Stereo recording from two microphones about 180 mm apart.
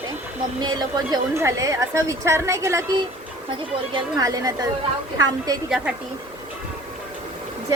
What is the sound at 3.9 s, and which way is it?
Speech, 20° right (ahead or behind).